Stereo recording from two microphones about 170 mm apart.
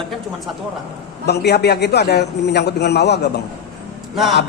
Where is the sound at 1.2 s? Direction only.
75° left (ahead or behind).